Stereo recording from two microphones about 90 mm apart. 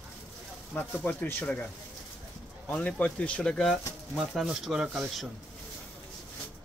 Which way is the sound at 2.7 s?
15° left (ahead or behind).